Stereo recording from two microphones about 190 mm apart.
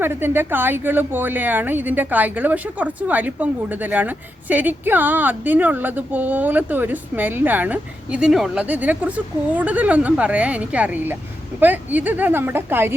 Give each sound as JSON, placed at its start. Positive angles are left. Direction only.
{"t": 0.0, "sound": "speech", "side_deg": -10}